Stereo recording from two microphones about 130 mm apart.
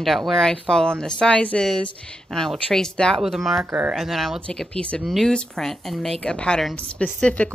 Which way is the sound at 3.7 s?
15° right (ahead or behind).